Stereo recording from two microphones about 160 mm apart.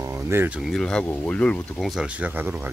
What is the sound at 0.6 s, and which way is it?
Speech, 5° left (ahead or behind).